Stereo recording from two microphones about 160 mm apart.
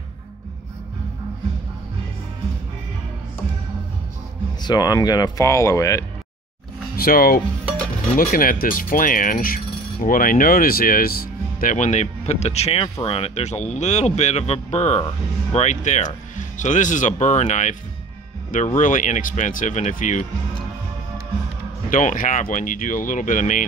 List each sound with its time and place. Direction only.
4.6 s speech: 25° left (ahead or behind)
7.0 s speech: 65° left (ahead or behind); by 17.7 s 50° left (ahead or behind)
18.8 s speech: 55° left (ahead or behind)
21.9 s speech: 55° left (ahead or behind)